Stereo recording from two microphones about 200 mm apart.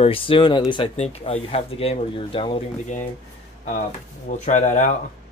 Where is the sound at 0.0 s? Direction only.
25° left (ahead or behind).